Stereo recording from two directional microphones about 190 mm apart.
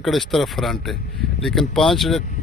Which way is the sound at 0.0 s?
Centre (ahead or behind).